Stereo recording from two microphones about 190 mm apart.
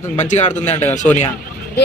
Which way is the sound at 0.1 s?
40° left (ahead or behind).